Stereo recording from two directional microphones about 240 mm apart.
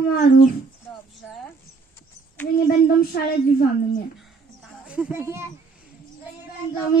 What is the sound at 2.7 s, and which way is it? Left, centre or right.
Speech, left.